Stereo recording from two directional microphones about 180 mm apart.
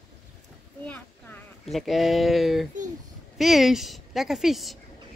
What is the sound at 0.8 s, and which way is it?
A woman's voice, 10° left (ahead or behind).